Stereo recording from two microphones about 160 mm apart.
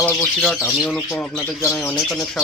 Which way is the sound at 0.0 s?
10° left (ahead or behind).